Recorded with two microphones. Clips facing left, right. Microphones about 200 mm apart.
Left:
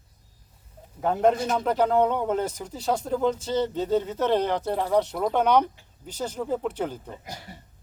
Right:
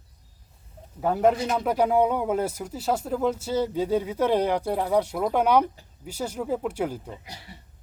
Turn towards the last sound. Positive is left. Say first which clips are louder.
# left 4 dB
turn(degrees=45)  # may be behind; listen again after turning